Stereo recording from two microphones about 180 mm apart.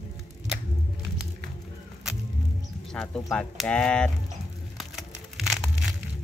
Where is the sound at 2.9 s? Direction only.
5° left (ahead or behind).